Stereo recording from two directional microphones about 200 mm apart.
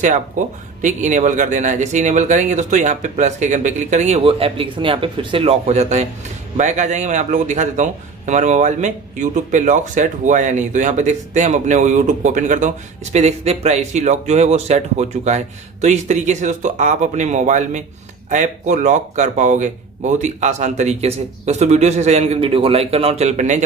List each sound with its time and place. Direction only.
0.0 s a man's voice: 40° right (ahead or behind)